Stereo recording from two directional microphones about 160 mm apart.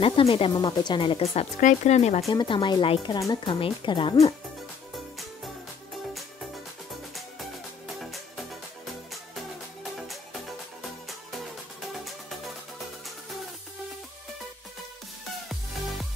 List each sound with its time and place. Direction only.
0.0 s speech: 35° left (ahead or behind)
2.2 s speech: 30° left (ahead or behind)
11.9 s music: centre (ahead or behind)